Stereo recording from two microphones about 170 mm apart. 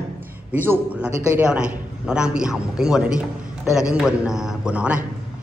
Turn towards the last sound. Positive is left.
turn(degrees=-5)  # may be behind; listen again after turning